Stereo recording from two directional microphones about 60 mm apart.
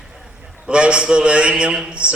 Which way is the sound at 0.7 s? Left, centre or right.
Centre.